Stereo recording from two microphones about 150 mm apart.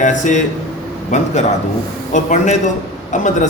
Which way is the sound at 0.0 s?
55° left (ahead or behind).